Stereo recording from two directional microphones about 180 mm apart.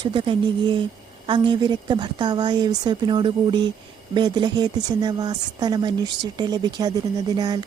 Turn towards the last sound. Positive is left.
turn(degrees=-20)  # may be behind; listen again after turning